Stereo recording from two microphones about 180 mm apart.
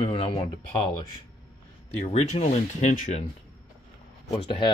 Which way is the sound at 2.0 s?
35° left (ahead or behind).